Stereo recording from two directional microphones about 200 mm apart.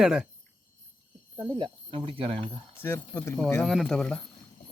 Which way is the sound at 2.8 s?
10° left (ahead or behind).